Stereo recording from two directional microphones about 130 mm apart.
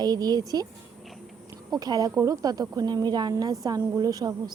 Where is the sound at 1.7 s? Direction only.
30° right (ahead or behind).